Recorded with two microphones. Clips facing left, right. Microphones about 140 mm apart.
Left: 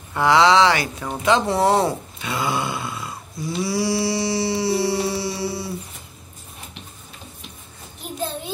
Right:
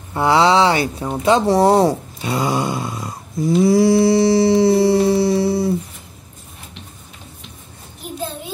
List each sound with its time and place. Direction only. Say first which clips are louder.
0.1 s speech: right 1 dB; 30° right (ahead or behind); by 5.0 s 50° right (ahead or behind)
5.1 s music: right 10 dB; 50° right (ahead or behind)